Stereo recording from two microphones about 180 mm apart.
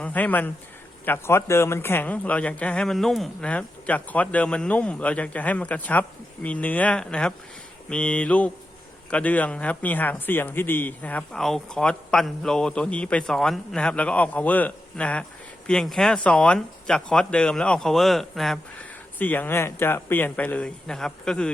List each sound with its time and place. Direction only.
0.0 s a man's voice: 10° left (ahead or behind)